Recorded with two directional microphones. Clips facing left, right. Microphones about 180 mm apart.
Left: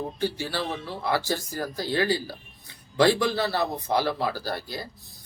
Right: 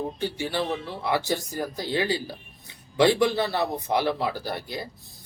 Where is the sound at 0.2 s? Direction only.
15° right (ahead or behind).